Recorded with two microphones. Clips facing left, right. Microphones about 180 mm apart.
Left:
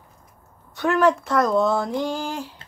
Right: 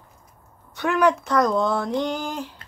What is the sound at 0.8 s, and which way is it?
Speech, centre (ahead or behind).